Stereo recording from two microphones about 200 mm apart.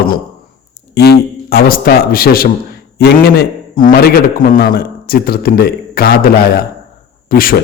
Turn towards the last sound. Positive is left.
turn(degrees=45)  # may be behind; listen again after turning